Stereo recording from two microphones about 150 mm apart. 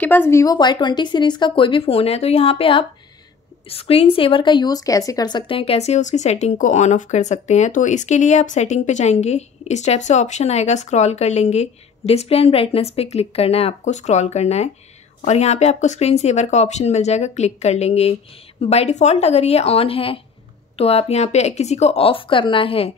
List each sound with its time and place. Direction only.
0.0 s speech: 15° left (ahead or behind); by 22.8 s 35° left (ahead or behind)